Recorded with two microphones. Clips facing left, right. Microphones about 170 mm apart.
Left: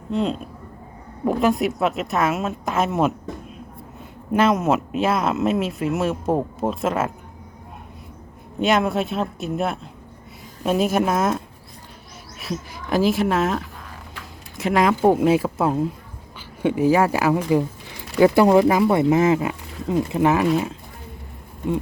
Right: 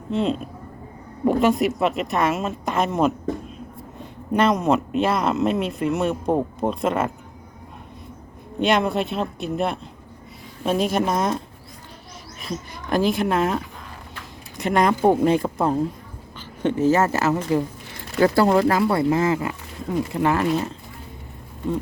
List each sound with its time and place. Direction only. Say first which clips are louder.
0.1 s speech: right 1 dB; centre (ahead or behind)
4.3 s speech: even; 5° left (ahead or behind)
8.5 s speech: even; centre (ahead or behind); by 20.4 s 15° left (ahead or behind)
20.4 s speech: left 2 dB; 5° left (ahead or behind)